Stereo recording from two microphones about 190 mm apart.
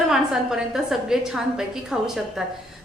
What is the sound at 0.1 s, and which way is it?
A woman's voice, 5° right (ahead or behind).